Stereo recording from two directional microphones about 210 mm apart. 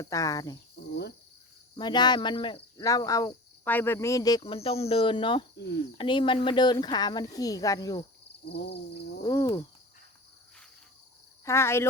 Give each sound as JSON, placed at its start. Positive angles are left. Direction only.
{"t": 0.0, "sound": "speech", "side_deg": 15}
{"t": 1.7, "sound": "speech", "side_deg": 20}
{"t": 8.4, "sound": "a sound", "side_deg": 50}
{"t": 9.2, "sound": "speech", "side_deg": 15}
{"t": 11.4, "sound": "speech", "side_deg": 10}